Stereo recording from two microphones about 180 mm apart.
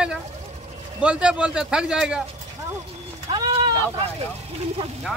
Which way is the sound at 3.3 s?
25° right (ahead or behind).